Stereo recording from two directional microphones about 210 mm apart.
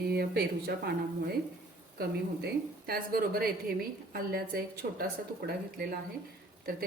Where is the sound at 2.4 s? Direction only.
45° right (ahead or behind).